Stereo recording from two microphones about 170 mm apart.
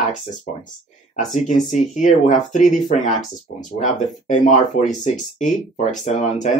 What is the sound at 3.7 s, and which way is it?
Speech, 45° left (ahead or behind).